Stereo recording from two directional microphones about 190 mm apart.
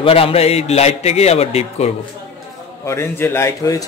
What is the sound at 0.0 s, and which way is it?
A man's voice, 30° left (ahead or behind).